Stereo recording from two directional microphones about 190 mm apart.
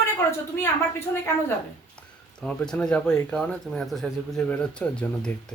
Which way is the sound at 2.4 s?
5° left (ahead or behind).